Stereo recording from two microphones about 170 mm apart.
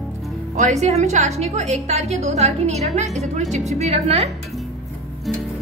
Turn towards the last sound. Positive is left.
turn(degrees=-40)  # may be behind; listen again after turning